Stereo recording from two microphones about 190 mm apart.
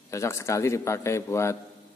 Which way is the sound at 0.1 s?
15° left (ahead or behind).